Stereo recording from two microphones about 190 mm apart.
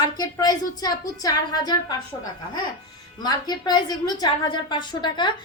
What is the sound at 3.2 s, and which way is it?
A woman's voice, 20° left (ahead or behind).